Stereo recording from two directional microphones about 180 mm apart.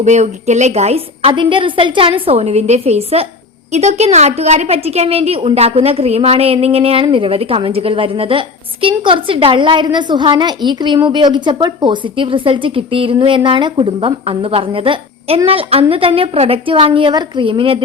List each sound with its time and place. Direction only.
0.0 s a woman's voice: 40° right (ahead or behind)